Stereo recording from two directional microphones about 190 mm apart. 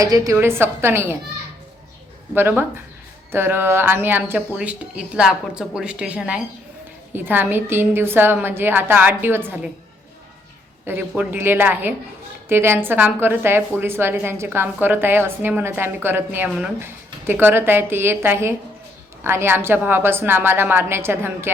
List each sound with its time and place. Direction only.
0.0 s a woman's voice: 15° right (ahead or behind)
2.3 s a woman's voice: 10° right (ahead or behind)
10.8 s a woman's voice: 10° right (ahead or behind)